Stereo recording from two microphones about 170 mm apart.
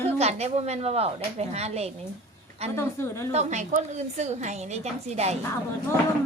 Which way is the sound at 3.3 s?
40° right (ahead or behind).